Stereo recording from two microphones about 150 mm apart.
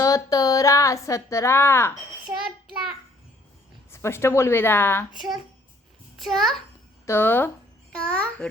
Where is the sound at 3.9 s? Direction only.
15° left (ahead or behind).